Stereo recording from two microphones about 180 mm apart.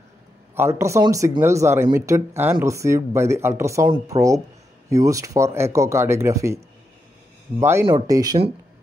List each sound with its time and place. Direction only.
0.6 s speech: 15° right (ahead or behind)
7.8 s speech: 20° right (ahead or behind)